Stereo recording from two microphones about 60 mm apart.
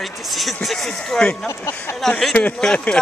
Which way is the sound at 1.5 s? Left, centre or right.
Left.